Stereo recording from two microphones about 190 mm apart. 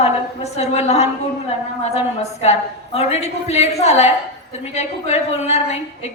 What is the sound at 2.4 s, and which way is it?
A woman's voice, 35° left (ahead or behind).